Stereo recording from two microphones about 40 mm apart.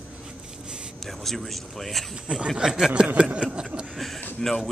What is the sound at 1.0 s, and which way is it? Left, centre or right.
Speech, centre.